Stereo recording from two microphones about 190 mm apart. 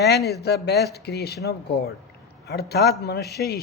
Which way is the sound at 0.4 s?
60° left (ahead or behind).